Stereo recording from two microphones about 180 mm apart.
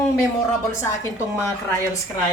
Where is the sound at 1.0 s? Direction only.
15° left (ahead or behind).